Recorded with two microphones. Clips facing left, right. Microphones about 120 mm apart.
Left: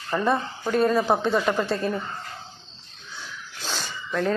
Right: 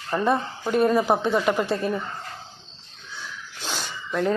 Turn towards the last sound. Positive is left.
turn(degrees=-15)  # may be behind; listen again after turning